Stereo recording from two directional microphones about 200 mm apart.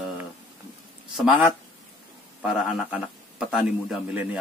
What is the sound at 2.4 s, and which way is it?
Speech, 5° right (ahead or behind).